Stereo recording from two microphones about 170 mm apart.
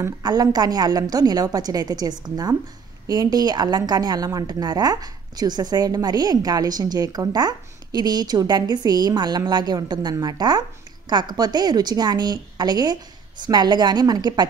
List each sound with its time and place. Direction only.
0.0 s a woman's voice: 20° right (ahead or behind)